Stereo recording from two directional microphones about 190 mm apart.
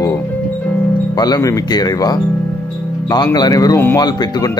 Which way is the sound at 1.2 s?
20° left (ahead or behind).